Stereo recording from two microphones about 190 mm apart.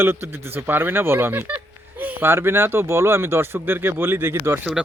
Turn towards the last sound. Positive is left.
turn(degrees=-5)  # may be behind; listen again after turning